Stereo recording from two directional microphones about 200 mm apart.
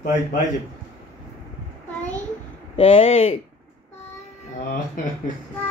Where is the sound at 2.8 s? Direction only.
30° left (ahead or behind).